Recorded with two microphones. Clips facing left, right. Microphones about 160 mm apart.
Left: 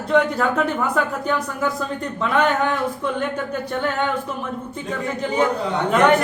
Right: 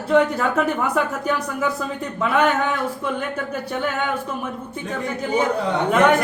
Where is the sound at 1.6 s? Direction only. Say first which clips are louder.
Even; 5° right (ahead or behind).